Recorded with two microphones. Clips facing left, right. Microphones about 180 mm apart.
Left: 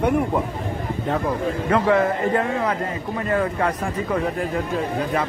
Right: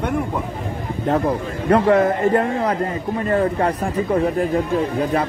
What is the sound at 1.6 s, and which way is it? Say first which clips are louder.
A man's voice: right 4 dB; 40° right (ahead or behind).